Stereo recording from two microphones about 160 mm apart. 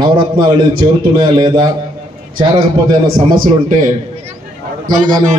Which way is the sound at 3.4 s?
55° right (ahead or behind).